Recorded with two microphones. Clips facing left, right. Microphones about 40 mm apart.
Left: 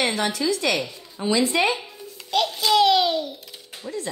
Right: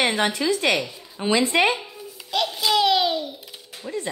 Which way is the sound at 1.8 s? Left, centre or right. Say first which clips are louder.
Right 1 dB; centre.